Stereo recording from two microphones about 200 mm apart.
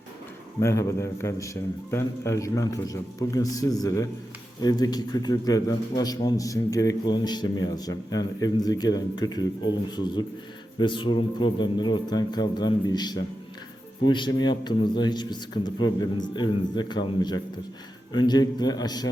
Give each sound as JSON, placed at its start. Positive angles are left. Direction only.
{"t": 0.6, "sound": "a man's voice", "side_deg": 15}